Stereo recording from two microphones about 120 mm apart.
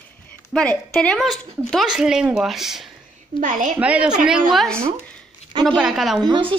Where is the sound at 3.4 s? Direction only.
90° right.